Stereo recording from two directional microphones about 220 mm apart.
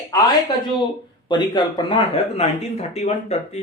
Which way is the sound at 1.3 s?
20° left (ahead or behind).